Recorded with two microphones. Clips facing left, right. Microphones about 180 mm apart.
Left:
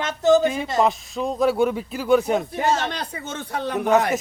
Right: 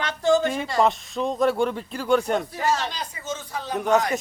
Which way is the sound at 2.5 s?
20° left (ahead or behind).